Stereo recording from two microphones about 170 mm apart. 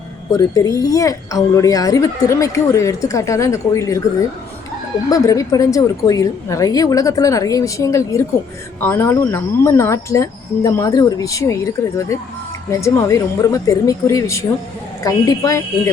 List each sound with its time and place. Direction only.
0.3 s a woman's voice: 20° left (ahead or behind)